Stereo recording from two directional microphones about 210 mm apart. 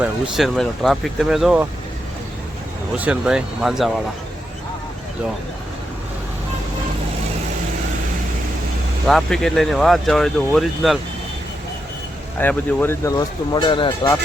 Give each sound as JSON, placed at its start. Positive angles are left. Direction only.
{"t": 0.0, "sound": "speech", "side_deg": 0}
{"t": 3.0, "sound": "speech", "side_deg": -5}
{"t": 9.0, "sound": "speech", "side_deg": 0}
{"t": 12.4, "sound": "speech", "side_deg": 10}